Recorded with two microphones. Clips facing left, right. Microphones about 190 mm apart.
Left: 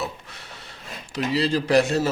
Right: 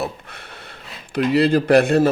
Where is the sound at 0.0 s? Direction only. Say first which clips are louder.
Right 4 dB; 55° right (ahead or behind).